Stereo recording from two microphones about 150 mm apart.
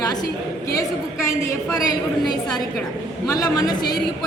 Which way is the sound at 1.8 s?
25° left (ahead or behind).